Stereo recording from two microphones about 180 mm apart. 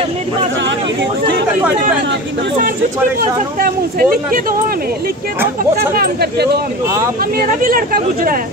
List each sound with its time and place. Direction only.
3.2 s speech: 55° right (ahead or behind)
5.8 s speech: 60° right (ahead or behind)
7.6 s speech: 50° right (ahead or behind)